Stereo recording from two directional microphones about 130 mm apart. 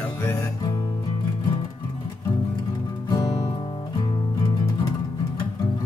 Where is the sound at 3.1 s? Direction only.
30° left (ahead or behind).